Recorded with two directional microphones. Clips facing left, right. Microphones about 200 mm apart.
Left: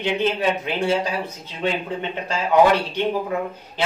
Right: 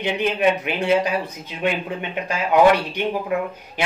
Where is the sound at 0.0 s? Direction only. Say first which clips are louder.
Right 1 dB; 15° right (ahead or behind).